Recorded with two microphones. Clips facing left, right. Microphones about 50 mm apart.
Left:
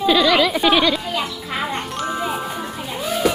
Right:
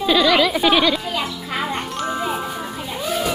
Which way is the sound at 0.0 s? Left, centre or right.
Centre.